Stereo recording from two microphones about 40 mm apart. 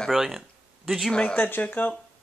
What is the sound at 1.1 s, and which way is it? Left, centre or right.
Speech, left.